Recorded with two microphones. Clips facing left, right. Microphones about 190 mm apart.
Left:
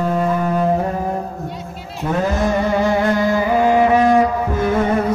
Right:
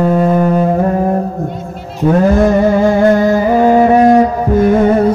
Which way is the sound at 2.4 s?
50° right (ahead or behind).